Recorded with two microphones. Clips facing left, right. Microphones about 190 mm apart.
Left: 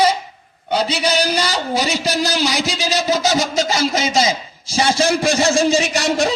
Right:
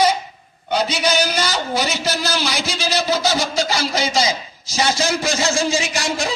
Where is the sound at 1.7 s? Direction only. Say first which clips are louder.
Left 2 dB; 15° left (ahead or behind).